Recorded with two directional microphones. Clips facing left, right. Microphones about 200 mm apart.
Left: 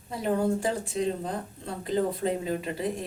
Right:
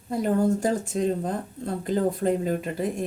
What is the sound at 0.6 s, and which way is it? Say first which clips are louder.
Speech: right 4 dB; 45° right (ahead or behind).